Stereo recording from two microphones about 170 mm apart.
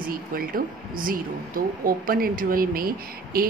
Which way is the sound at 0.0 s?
60° right (ahead or behind).